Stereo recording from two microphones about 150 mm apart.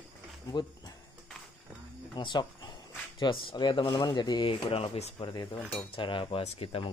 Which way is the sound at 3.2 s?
35° left (ahead or behind).